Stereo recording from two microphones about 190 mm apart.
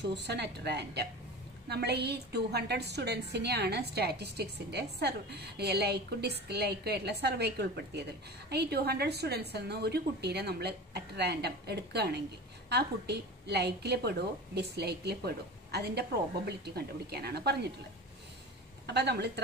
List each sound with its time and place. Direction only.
0.0 s a woman's voice: 60° right (ahead or behind)
18.9 s a woman's voice: 60° right (ahead or behind)